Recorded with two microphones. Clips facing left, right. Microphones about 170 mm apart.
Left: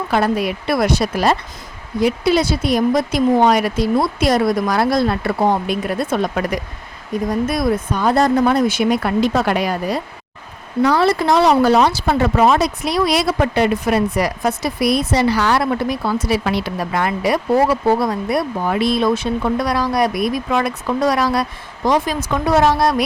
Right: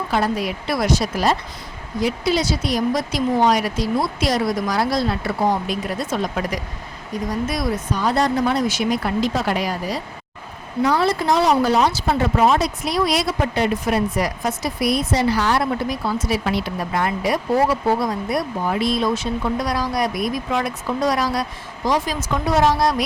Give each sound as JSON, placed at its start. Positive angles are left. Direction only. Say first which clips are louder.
{"t": 0.1, "sound": "speech", "louder": "left 4 dB", "side_deg": 60}
{"t": 10.8, "sound": "speech", "louder": "left 3 dB", "side_deg": 75}